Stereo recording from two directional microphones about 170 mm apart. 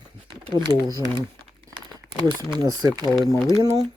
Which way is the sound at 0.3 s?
30° right (ahead or behind).